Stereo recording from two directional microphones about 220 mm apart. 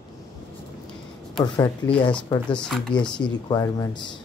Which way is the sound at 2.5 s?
5° left (ahead or behind).